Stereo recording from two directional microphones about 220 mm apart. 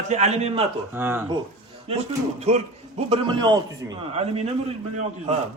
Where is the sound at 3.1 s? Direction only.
20° right (ahead or behind).